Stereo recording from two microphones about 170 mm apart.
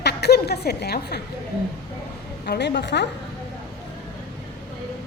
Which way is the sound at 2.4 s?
80° left.